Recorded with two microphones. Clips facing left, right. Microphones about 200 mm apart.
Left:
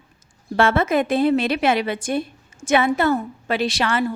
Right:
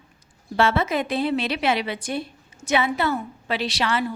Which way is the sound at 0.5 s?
50° left (ahead or behind).